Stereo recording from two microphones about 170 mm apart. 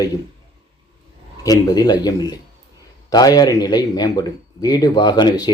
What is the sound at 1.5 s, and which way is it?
A man's voice, 20° left (ahead or behind).